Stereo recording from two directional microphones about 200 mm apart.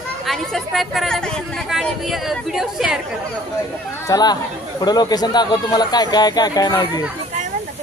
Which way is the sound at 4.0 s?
20° left (ahead or behind).